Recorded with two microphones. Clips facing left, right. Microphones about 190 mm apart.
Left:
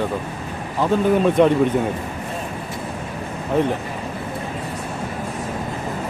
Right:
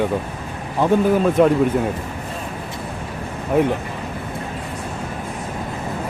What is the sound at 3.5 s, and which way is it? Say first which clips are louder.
Speech: right 2 dB; 10° right (ahead or behind).